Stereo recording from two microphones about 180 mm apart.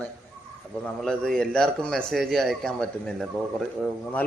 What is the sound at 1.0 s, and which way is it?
Speech, 5° left (ahead or behind).